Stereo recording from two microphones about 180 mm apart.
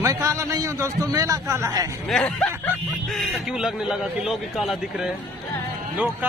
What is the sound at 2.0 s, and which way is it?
A man's voice, 5° left (ahead or behind).